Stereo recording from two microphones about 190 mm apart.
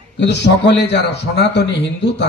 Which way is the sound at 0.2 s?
65° left (ahead or behind).